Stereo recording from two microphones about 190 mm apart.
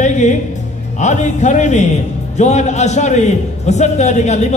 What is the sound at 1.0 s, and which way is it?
Speech, 40° left (ahead or behind).